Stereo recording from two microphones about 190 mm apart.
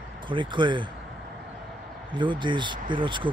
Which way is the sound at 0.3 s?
25° right (ahead or behind).